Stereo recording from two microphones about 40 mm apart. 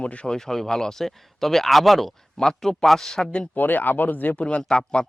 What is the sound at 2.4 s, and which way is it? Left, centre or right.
Speech, centre.